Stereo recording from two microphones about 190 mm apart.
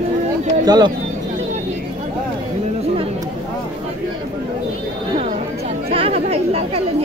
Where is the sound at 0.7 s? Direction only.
20° right (ahead or behind).